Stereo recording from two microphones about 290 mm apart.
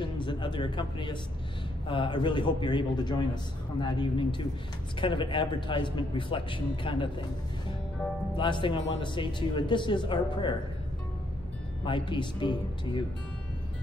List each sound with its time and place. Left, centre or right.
0.0 s speech: centre
8.4 s speech: centre
11.8 s speech: centre